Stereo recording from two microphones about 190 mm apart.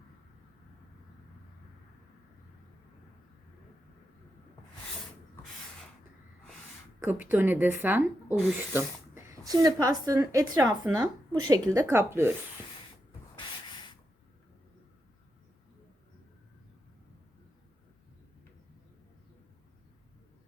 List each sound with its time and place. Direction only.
7.0 s speech: 10° right (ahead or behind)